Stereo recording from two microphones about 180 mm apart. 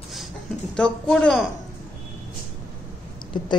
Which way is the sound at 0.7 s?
5° left (ahead or behind).